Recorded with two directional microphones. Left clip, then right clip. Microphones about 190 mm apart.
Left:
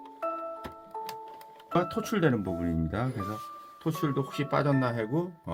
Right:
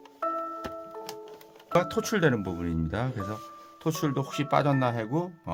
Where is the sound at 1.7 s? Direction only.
35° right (ahead or behind); by 3.3 s 15° right (ahead or behind).